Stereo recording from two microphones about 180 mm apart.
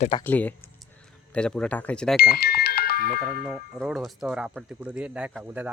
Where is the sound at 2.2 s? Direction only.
60° left (ahead or behind).